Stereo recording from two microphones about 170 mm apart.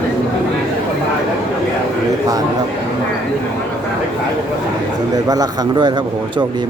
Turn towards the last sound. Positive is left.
turn(degrees=-20)  # may be behind; listen again after turning